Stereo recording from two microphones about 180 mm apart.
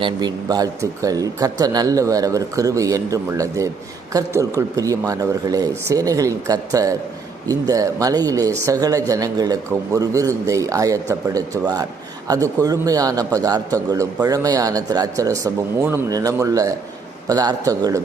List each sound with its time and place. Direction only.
0.0 s speech: 25° right (ahead or behind)